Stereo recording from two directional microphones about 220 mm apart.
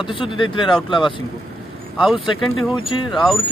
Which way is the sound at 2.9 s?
20° left (ahead or behind).